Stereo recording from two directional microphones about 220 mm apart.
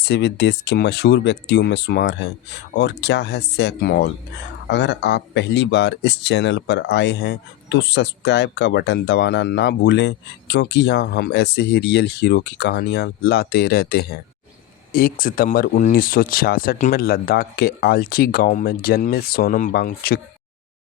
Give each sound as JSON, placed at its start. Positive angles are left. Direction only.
{"t": 0.0, "sound": "speech", "side_deg": 50}